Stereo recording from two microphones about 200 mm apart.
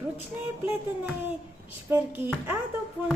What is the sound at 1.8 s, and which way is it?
Speech, 10° right (ahead or behind).